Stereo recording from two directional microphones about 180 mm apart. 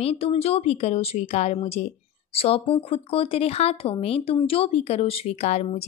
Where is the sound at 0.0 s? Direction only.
35° left (ahead or behind).